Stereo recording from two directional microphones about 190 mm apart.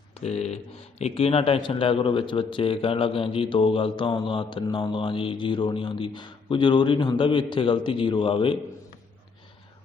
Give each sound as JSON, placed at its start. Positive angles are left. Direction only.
{"t": 0.1, "sound": "speech", "side_deg": 35}